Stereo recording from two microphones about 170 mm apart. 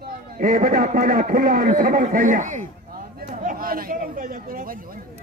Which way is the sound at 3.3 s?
55° right (ahead or behind).